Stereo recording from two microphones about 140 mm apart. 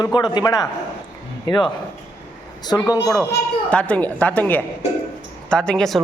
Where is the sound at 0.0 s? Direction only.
30° left (ahead or behind).